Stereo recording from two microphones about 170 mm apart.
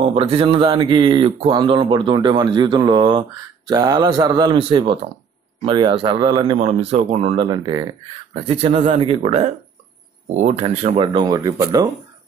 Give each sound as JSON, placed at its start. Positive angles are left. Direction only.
{"t": 0.0, "sound": "speech", "side_deg": -35}
{"t": 6.6, "sound": "speech", "side_deg": -40}
{"t": 7.4, "sound": "speech", "side_deg": -25}
{"t": 8.3, "sound": "speech", "side_deg": -35}
{"t": 11.3, "sound": "speech", "side_deg": -20}